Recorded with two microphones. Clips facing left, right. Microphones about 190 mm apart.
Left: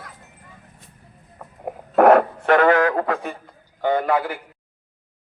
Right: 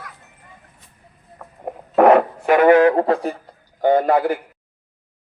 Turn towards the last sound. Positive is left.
turn(degrees=-40)  # may be behind; listen again after turning